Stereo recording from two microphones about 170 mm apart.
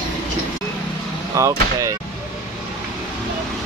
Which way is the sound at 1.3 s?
20° right (ahead or behind).